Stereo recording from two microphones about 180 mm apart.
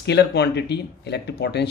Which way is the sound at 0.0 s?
70° left (ahead or behind).